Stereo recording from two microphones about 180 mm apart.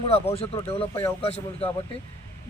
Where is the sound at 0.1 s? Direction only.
35° left (ahead or behind).